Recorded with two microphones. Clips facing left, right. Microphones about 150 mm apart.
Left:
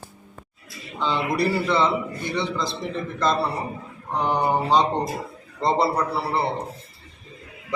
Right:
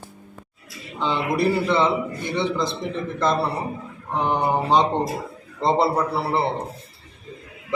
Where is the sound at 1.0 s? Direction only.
20° right (ahead or behind).